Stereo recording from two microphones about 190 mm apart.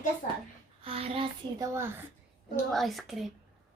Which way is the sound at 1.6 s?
15° right (ahead or behind).